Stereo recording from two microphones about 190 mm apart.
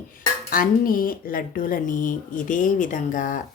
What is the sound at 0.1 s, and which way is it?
Speech, 45° left (ahead or behind).